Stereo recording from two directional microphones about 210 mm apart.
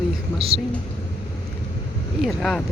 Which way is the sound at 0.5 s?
55° right (ahead or behind).